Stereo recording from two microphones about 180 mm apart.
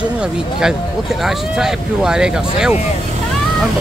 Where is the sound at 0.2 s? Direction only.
5° right (ahead or behind).